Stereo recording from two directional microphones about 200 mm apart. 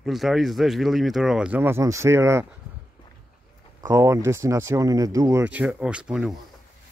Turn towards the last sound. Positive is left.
turn(degrees=-5)  # may be behind; listen again after turning